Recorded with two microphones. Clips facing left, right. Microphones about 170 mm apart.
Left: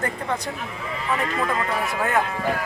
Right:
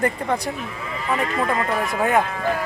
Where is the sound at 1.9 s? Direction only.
15° right (ahead or behind).